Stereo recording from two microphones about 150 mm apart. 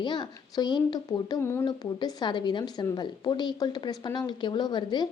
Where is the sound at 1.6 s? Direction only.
25° left (ahead or behind).